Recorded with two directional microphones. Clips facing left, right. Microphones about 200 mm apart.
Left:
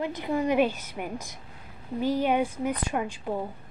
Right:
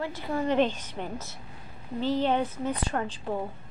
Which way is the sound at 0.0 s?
20° left (ahead or behind).